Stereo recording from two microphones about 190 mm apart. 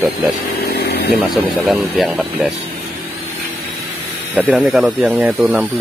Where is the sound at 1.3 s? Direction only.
Centre (ahead or behind).